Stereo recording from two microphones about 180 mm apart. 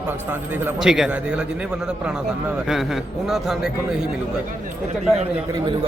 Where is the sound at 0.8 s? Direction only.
Centre (ahead or behind).